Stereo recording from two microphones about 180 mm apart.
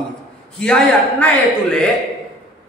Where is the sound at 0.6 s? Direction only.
5° left (ahead or behind).